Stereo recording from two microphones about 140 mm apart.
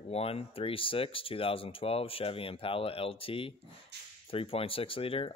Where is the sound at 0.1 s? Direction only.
45° left (ahead or behind).